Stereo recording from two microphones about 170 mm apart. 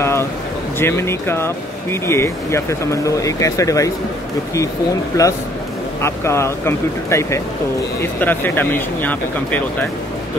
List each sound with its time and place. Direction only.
0.0 s a sound: 15° left (ahead or behind)
0.7 s speech: 15° left (ahead or behind)
5.1 s a man's voice: 20° left (ahead or behind)